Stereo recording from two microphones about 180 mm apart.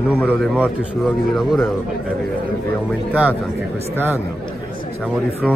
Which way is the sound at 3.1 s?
10° right (ahead or behind).